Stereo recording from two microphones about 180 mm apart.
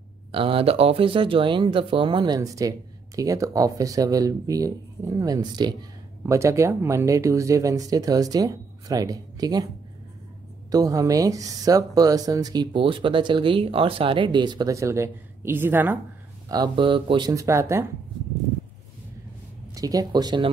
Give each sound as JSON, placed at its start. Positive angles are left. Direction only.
{"t": 0.3, "sound": "speech", "side_deg": -30}
{"t": 10.7, "sound": "speech", "side_deg": -20}
{"t": 16.4, "sound": "speech", "side_deg": -25}
{"t": 19.7, "sound": "speech", "side_deg": -20}